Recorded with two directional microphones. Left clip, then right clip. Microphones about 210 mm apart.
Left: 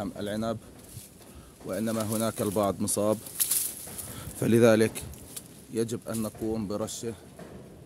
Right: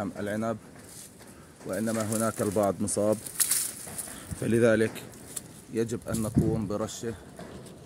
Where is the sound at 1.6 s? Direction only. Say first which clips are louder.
Even; 10° left (ahead or behind).